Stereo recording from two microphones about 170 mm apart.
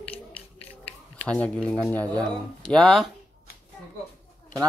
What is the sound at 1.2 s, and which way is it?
Speech, 5° left (ahead or behind).